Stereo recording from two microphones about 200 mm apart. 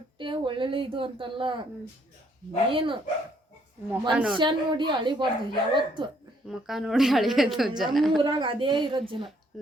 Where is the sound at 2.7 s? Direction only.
25° right (ahead or behind).